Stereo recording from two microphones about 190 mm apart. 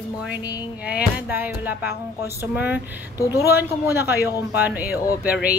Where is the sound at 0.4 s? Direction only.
20° left (ahead or behind).